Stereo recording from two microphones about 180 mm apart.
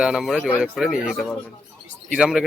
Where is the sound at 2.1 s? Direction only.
5° right (ahead or behind).